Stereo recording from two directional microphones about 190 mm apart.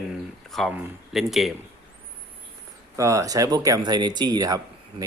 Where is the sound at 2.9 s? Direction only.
15° right (ahead or behind).